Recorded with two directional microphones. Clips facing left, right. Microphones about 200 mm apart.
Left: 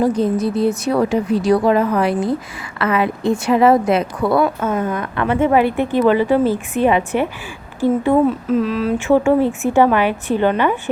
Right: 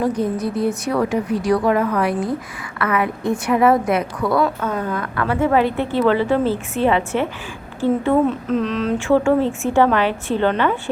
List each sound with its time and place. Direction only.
0.0 s a woman's voice: 30° left (ahead or behind); by 9.0 s 5° left (ahead or behind)
9.0 s a woman's voice: 20° left (ahead or behind)